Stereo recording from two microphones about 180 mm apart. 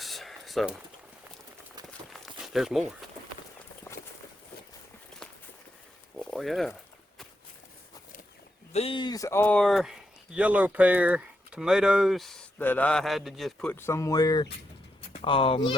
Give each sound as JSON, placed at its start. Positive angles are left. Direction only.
{"t": 0.0, "sound": "a sound", "side_deg": 0}
{"t": 2.2, "sound": "crumpling", "side_deg": 0}
{"t": 6.1, "sound": "speech", "side_deg": 5}
{"t": 8.7, "sound": "speech", "side_deg": 30}